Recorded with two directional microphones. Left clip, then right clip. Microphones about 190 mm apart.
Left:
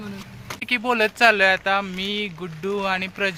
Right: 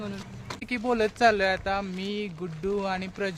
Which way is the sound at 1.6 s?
15° left (ahead or behind).